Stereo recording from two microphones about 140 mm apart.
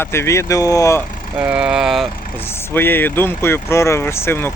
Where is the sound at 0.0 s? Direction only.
20° left (ahead or behind).